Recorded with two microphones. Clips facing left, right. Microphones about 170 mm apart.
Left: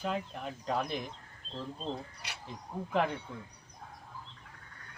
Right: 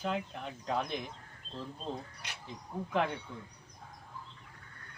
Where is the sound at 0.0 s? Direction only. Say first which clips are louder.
Even; centre (ahead or behind).